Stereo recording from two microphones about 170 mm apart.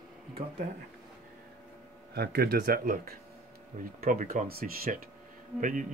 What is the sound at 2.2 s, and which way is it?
Speech, 65° right (ahead or behind).